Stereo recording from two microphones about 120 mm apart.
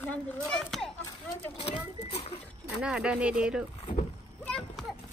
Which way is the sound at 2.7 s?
10° right (ahead or behind).